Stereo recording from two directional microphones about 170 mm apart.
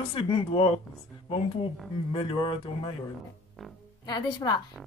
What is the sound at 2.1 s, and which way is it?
Speech, 30° left (ahead or behind).